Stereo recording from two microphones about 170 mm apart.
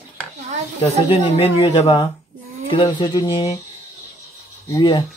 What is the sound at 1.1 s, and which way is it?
Speech, 35° left (ahead or behind).